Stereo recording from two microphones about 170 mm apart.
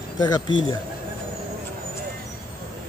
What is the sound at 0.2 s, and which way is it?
Speech, 25° left (ahead or behind).